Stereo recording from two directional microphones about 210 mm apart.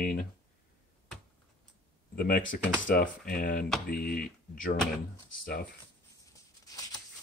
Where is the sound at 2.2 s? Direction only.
40° left (ahead or behind).